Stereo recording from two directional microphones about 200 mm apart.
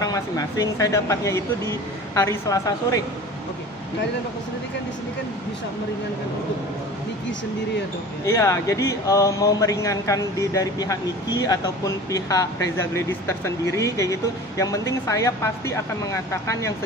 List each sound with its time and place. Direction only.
0.0 s speech: 20° left (ahead or behind)
8.3 s speech: 15° left (ahead or behind)